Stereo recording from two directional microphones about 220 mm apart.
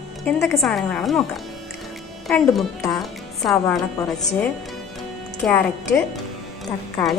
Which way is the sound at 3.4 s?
Centre (ahead or behind).